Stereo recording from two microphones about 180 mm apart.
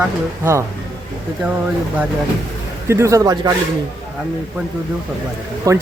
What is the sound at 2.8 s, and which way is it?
Speech, 15° right (ahead or behind).